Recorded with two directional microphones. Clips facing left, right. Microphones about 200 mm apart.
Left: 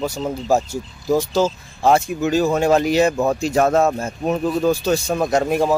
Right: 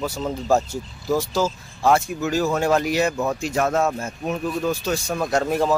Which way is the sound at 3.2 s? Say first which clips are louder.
Left 5 dB; 35° left (ahead or behind).